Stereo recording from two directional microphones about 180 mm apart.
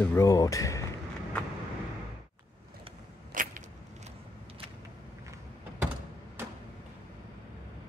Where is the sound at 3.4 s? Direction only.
50° right (ahead or behind).